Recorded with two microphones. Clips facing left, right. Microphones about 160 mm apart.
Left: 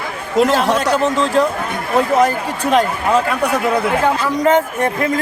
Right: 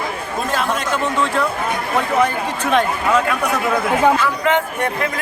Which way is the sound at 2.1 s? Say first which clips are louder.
Left 3 dB; 35° left (ahead or behind).